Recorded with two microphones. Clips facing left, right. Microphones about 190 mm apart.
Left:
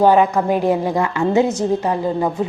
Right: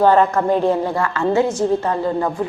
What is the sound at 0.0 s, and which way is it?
A woman's voice, 15° left (ahead or behind).